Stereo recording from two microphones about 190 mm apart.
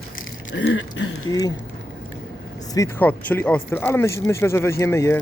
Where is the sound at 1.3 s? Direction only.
20° left (ahead or behind).